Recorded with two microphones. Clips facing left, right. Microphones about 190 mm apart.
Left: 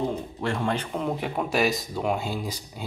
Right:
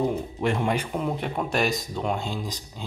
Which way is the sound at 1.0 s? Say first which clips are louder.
Even; centre (ahead or behind).